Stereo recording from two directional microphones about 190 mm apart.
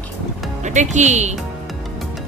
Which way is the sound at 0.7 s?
40° right (ahead or behind).